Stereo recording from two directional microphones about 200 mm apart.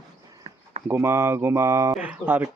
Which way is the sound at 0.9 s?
15° right (ahead or behind).